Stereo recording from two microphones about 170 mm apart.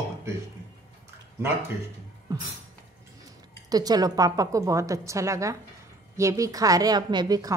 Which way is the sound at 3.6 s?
20° right (ahead or behind).